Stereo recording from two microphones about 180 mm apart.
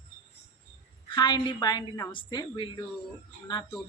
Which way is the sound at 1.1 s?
25° left (ahead or behind).